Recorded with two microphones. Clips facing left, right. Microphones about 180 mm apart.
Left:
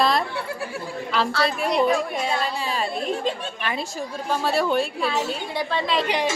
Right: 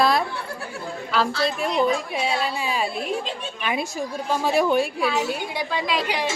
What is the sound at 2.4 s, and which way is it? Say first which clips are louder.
A woman's voice: right 1 dB; 10° right (ahead or behind).